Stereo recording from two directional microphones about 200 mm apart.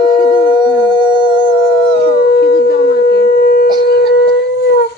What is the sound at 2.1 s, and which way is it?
Howl, 50° left (ahead or behind).